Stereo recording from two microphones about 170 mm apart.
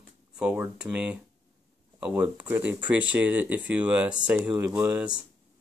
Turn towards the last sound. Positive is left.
turn(degrees=-5)  # may be behind; listen again after turning